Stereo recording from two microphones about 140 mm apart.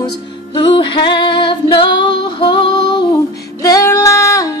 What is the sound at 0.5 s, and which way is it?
Female singing, 35° left (ahead or behind).